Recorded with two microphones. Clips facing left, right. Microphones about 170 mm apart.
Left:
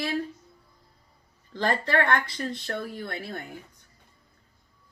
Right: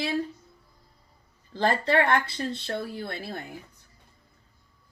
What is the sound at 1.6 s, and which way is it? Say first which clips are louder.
Speech: right 2 dB; 25° right (ahead or behind).